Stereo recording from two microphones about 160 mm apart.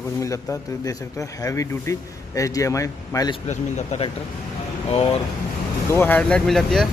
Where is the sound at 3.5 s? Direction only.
45° left (ahead or behind).